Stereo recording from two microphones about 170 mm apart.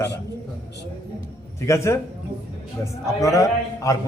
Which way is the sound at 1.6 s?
15° left (ahead or behind).